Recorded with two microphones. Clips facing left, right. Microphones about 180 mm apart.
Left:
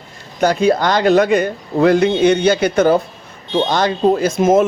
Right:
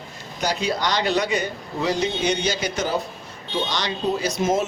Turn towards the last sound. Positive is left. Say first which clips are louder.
# left 9 dB
turn(degrees=50)  # may be behind; listen again after turning